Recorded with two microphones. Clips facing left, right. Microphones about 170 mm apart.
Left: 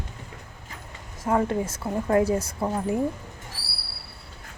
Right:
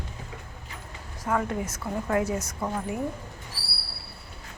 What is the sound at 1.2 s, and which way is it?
A woman's voice, 30° left (ahead or behind).